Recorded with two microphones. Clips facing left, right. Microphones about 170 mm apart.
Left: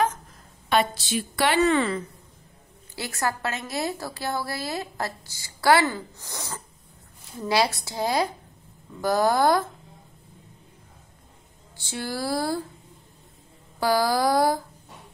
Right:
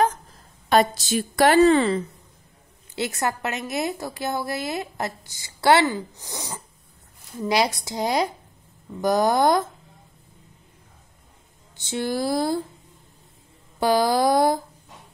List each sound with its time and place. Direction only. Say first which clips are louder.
0.7 s a woman's voice: right 4 dB; 40° right (ahead or behind)
1.6 s a woman's voice: right 5 dB; 30° right (ahead or behind)
3.0 s a woman's voice: right 3 dB; 20° right (ahead or behind)
11.7 s a woman's voice: right 6 dB; 20° right (ahead or behind)
13.7 s a woman's voice: right 3 dB; 20° right (ahead or behind)